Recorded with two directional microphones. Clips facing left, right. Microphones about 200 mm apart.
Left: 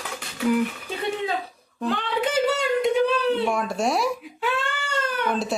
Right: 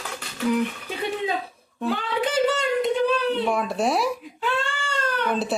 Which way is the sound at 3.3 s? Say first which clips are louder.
Even; centre (ahead or behind).